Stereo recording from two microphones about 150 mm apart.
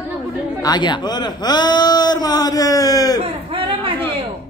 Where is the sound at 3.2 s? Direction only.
40° right (ahead or behind).